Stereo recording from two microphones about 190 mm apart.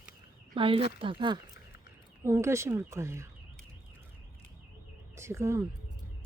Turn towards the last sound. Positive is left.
turn(degrees=-15)  # may be behind; listen again after turning